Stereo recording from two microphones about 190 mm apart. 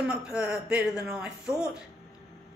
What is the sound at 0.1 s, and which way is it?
A man's voice, 5° right (ahead or behind).